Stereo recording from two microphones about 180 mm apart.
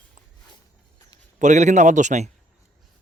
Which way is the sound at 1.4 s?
40° right (ahead or behind).